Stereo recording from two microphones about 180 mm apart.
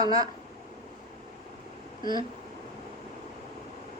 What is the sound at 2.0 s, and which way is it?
Speech, 25° right (ahead or behind).